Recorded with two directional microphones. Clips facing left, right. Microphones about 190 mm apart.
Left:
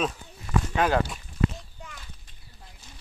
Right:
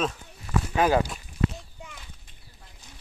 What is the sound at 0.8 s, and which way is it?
Speech, 10° right (ahead or behind).